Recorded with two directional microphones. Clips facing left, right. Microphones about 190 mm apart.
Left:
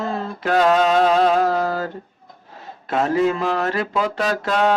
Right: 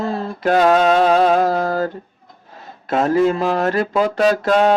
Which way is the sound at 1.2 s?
40° right (ahead or behind).